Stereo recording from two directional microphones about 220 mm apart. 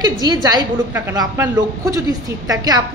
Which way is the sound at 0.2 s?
15° right (ahead or behind).